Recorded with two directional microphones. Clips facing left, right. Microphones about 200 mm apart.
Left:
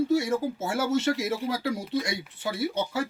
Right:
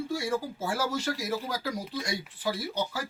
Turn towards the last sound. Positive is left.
turn(degrees=25)  # may be behind; listen again after turning